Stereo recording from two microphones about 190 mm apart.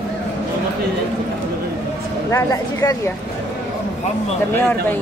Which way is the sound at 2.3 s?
15° left (ahead or behind).